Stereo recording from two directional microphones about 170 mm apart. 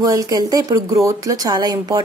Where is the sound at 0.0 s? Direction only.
20° right (ahead or behind).